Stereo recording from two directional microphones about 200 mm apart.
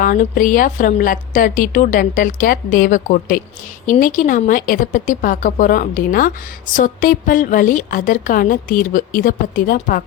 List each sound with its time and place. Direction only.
0.0 s a woman's voice: 45° left (ahead or behind)